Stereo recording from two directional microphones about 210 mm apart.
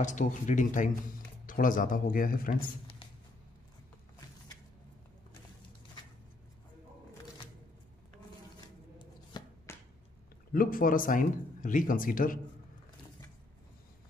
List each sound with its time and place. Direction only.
0.0 s speech: 35° left (ahead or behind)
8.5 s chopping: 20° left (ahead or behind)
10.5 s speech: 40° left (ahead or behind)